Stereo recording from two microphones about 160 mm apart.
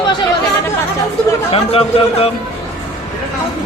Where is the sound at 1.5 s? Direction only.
40° left (ahead or behind).